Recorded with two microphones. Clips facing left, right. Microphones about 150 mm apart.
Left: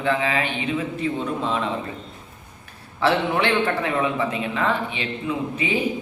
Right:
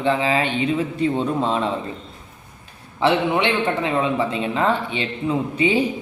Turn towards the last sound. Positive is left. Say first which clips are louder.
# right 5 dB
turn(degrees=-35)  # may be behind; listen again after turning